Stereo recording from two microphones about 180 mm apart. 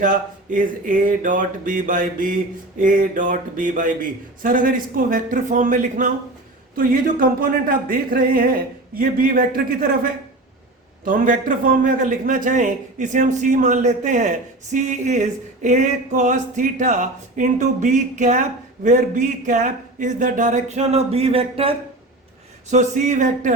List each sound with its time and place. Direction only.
0.0 s a man's voice: 50° right (ahead or behind); by 21.8 s 30° right (ahead or behind)
22.7 s a man's voice: 40° right (ahead or behind)